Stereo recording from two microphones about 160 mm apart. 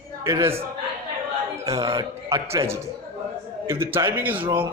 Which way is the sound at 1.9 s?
20° right (ahead or behind).